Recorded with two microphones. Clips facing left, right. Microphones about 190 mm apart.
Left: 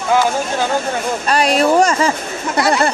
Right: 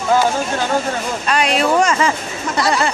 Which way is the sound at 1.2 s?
40° left (ahead or behind).